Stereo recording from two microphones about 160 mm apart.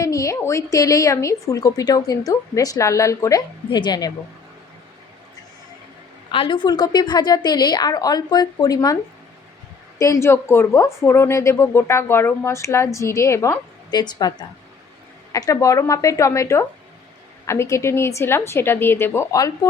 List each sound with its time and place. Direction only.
0.0 s a woman's voice: 20° left (ahead or behind)
6.3 s a woman's voice: 30° left (ahead or behind)
10.0 s a woman's voice: 20° left (ahead or behind)